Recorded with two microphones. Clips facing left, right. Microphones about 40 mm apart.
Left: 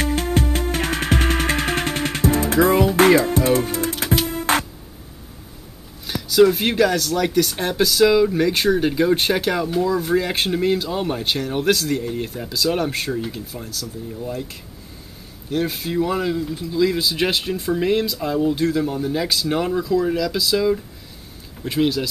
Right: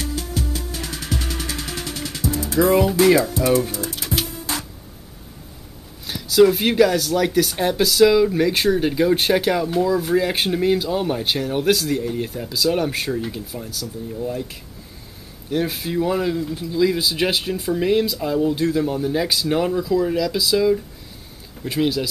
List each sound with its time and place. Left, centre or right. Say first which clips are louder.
0.0 s music: left 6 dB; left
6.0 s speech: even; centre
15.5 s speech: even; centre